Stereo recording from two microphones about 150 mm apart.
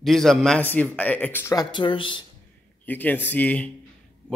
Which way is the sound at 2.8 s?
10° left (ahead or behind).